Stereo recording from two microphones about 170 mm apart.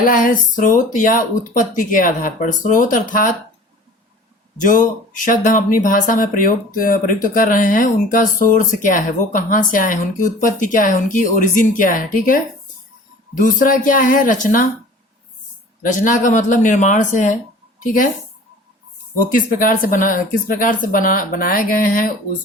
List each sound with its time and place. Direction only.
0.0 s speech: 55° left (ahead or behind)
4.6 s speech: 50° left (ahead or behind)
13.4 s speech: 55° left (ahead or behind)
15.8 s speech: 50° left (ahead or behind)
19.2 s speech: 55° left (ahead or behind)